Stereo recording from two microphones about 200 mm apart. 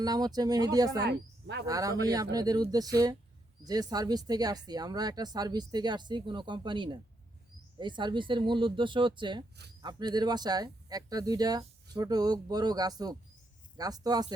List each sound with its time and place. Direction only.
0.0 s speech: 20° right (ahead or behind)
0.9 s speech: 55° right (ahead or behind)
1.6 s speech: 15° right (ahead or behind)